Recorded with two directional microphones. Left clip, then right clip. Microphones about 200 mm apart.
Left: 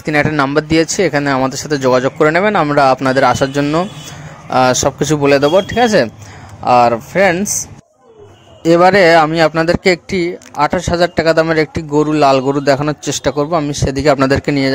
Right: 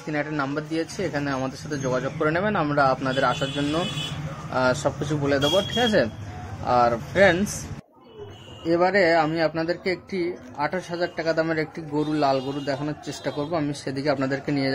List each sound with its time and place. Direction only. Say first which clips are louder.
0.0 s a man's voice: left 14 dB; 40° left (ahead or behind)
8.6 s a man's voice: left 12 dB; 40° left (ahead or behind)